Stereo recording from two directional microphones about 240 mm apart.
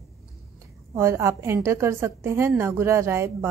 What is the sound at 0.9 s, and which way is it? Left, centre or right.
A woman's voice, centre.